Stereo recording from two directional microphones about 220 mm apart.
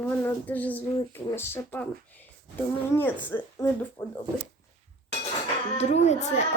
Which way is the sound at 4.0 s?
20° left (ahead or behind).